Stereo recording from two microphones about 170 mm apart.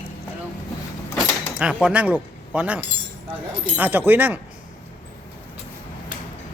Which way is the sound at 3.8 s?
10° right (ahead or behind).